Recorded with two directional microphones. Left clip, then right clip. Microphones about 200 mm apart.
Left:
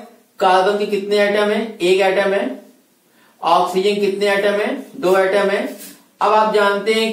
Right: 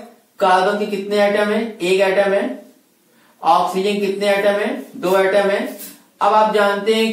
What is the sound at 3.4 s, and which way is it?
A man's voice, 5° left (ahead or behind).